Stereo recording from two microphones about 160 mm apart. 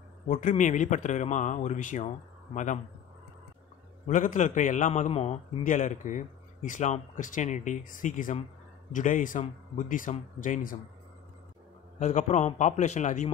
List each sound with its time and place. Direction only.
0.3 s a man's voice: 50° left (ahead or behind)
4.1 s a man's voice: 50° left (ahead or behind)
12.0 s a man's voice: 50° left (ahead or behind)